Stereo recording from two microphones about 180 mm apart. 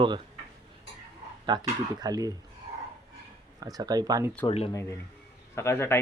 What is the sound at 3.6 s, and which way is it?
Speech, 20° right (ahead or behind).